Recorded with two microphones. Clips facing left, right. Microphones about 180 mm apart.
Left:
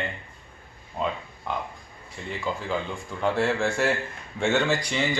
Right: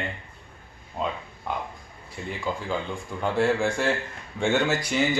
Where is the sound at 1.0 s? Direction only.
Centre (ahead or behind).